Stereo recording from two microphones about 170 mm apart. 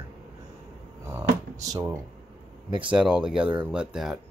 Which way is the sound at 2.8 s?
5° right (ahead or behind).